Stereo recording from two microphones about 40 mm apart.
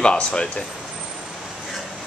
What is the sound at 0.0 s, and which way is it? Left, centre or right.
Speech, left.